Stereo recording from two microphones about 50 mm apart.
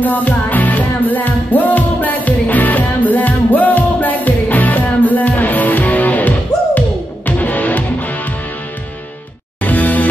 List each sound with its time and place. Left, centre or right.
0.0 s music: left
9.6 s music: left